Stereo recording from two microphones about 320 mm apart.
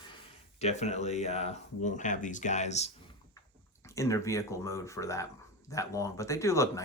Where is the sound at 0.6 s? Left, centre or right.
Left.